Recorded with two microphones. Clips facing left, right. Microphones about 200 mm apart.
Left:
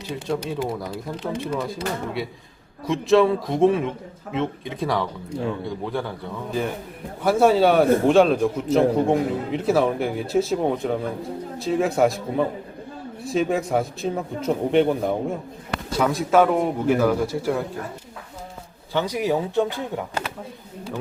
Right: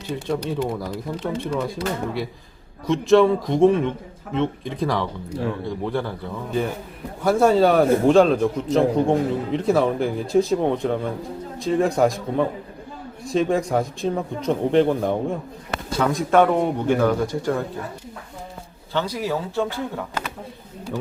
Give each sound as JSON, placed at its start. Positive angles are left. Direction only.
{"t": 0.1, "sound": "a man's voice", "side_deg": 0}
{"t": 18.9, "sound": "speech", "side_deg": 15}